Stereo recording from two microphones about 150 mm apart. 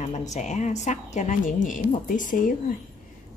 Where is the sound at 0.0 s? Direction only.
50° left (ahead or behind).